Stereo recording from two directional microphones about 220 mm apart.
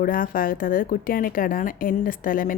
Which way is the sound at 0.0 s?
40° left (ahead or behind).